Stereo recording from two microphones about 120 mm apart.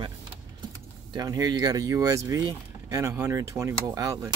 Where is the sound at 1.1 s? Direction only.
30° right (ahead or behind).